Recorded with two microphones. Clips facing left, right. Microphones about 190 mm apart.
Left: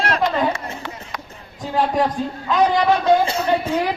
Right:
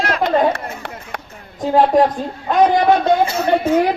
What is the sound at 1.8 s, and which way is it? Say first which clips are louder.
Speech: right 5 dB; 55° right (ahead or behind).